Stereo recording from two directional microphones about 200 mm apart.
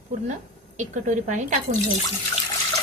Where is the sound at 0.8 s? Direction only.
40° right (ahead or behind).